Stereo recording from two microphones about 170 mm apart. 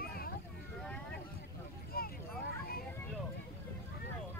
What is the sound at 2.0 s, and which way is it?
Vehicle, 60° left (ahead or behind).